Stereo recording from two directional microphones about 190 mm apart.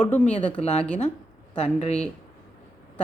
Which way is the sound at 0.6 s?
35° left (ahead or behind).